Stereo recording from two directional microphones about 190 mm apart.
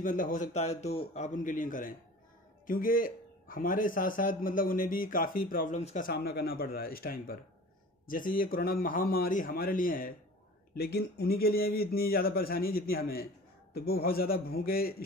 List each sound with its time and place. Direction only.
0.0 s a man's voice: 45° left (ahead or behind)
6.0 s a man's voice: 55° left (ahead or behind)